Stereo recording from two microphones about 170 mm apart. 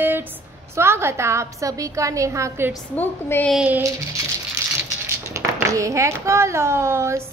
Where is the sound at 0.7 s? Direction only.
15° right (ahead or behind).